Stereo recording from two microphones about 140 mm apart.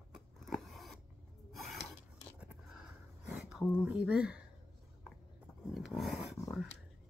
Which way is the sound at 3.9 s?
5° right (ahead or behind).